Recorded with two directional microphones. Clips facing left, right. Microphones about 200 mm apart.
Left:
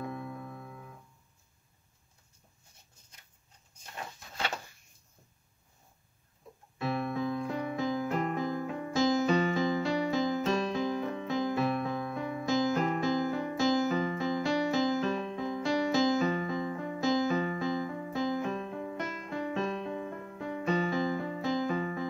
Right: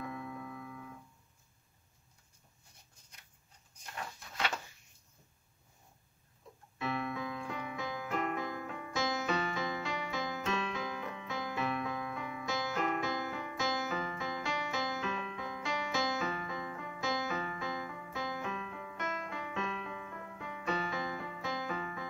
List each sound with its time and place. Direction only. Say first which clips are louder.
0.0 s music: left 3 dB; 35° left (ahead or behind)
6.8 s keyboard: left 5 dB; 35° left (ahead or behind)